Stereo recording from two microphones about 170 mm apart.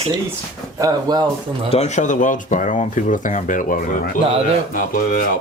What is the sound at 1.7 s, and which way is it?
Speech, 40° left (ahead or behind).